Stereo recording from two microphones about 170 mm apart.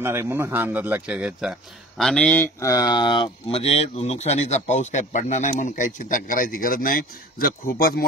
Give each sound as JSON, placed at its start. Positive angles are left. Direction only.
{"t": 0.0, "sound": "speech", "side_deg": -15}